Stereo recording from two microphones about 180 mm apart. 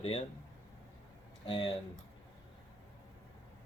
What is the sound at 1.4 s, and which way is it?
Speech, 25° left (ahead or behind).